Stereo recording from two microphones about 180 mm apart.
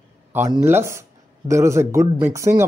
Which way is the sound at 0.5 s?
15° right (ahead or behind).